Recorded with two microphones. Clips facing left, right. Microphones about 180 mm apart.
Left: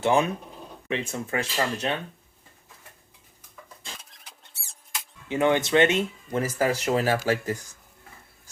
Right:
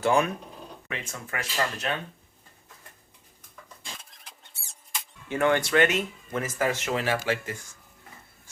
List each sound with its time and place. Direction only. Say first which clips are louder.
0.0 s speech: left 1 dB; 20° left (ahead or behind)
4.1 s mouse: even; centre (ahead or behind)
5.3 s speech: left 2 dB; 20° left (ahead or behind); by 7.8 s 40° left (ahead or behind)